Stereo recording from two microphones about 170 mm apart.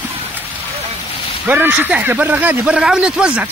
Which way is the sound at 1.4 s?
10° right (ahead or behind).